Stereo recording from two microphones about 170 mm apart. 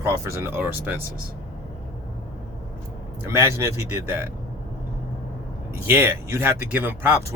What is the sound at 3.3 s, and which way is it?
Speech, 15° right (ahead or behind).